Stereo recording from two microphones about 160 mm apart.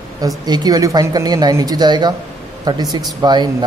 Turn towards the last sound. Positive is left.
turn(degrees=-25)  # may be behind; listen again after turning